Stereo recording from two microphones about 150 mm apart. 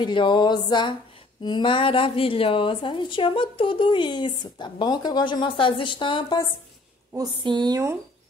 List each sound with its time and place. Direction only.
0.0 s a woman's voice: 30° left (ahead or behind)
7.2 s a woman's voice: 30° right (ahead or behind)